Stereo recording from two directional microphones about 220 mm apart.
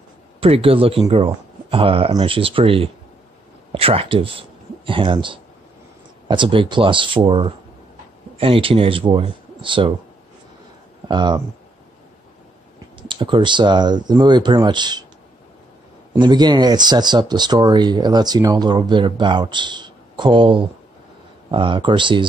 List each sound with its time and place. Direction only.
0.4 s speech: 25° right (ahead or behind)
11.1 s speech: 20° right (ahead or behind)
13.1 s speech: 20° right (ahead or behind)
16.1 s speech: 20° right (ahead or behind)